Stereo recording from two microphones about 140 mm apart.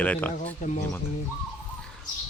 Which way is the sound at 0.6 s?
55° left (ahead or behind).